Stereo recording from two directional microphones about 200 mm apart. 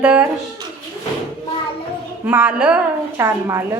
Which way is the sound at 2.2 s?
10° right (ahead or behind).